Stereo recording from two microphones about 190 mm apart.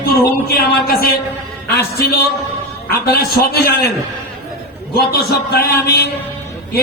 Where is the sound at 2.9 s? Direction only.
50° left (ahead or behind).